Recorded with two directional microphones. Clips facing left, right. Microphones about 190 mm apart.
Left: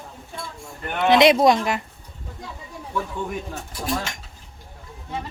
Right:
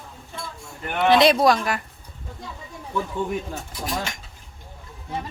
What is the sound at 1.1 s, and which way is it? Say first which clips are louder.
Speech: left 2 dB; 20° left (ahead or behind).